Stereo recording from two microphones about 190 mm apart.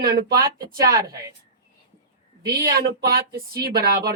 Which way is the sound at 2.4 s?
50° right (ahead or behind).